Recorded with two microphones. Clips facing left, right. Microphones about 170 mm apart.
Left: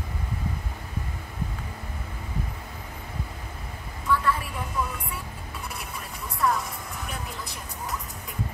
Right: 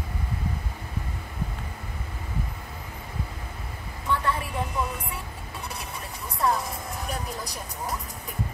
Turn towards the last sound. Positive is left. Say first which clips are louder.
# right 3 dB
turn(degrees=-35)  # may be behind; listen again after turning